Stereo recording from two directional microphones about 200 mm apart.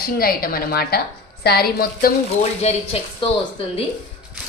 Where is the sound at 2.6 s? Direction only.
30° left (ahead or behind).